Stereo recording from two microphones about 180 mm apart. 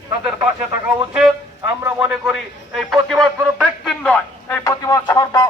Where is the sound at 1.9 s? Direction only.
5° right (ahead or behind); by 5.4 s 20° left (ahead or behind).